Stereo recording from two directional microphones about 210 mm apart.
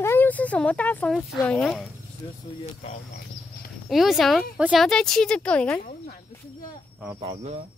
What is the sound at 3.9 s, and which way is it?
A woman's voice, centre (ahead or behind).